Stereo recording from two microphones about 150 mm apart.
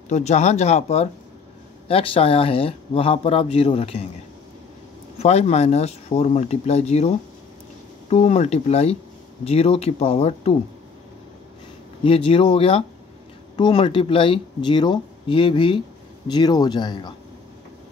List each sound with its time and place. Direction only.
0.1 s speech: 50° left (ahead or behind)
5.2 s speech: 45° left (ahead or behind)
12.3 s speech: 40° left (ahead or behind)